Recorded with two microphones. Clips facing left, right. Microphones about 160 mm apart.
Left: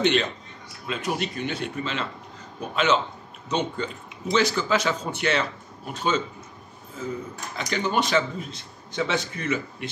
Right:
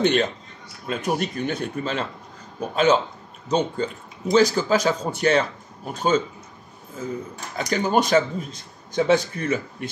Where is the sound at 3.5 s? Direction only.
40° right (ahead or behind).